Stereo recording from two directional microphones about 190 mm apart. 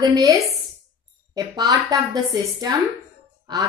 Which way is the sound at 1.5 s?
20° right (ahead or behind).